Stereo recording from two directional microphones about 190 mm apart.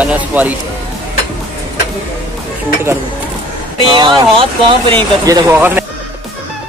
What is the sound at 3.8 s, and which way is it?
Speech, 25° right (ahead or behind).